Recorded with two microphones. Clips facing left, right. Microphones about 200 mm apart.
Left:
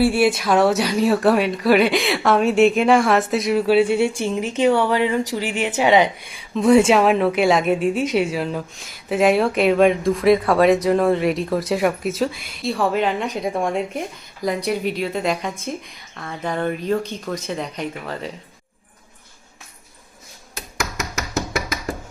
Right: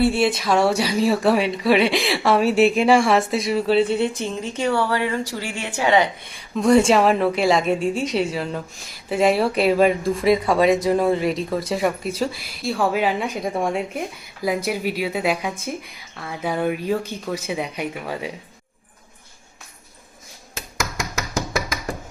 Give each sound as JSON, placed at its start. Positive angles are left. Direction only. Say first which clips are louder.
{"t": 0.3, "sound": "speech", "louder": "left 2 dB", "side_deg": 0}
{"t": 4.4, "sound": "speech", "louder": "left 5 dB", "side_deg": 15}
{"t": 6.5, "sound": "speech", "louder": "left 2 dB", "side_deg": 5}